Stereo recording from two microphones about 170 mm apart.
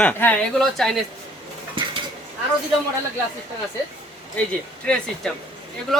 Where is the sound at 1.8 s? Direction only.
30° right (ahead or behind).